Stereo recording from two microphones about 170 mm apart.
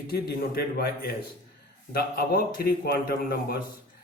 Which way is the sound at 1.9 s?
65° left (ahead or behind).